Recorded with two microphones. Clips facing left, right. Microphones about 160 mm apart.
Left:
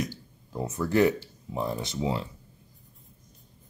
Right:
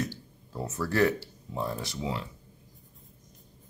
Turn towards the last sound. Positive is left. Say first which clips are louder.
# left 4 dB
turn(degrees=25)  # may be behind; listen again after turning